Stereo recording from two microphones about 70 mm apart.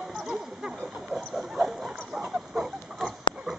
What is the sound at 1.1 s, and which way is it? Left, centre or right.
Dog, centre.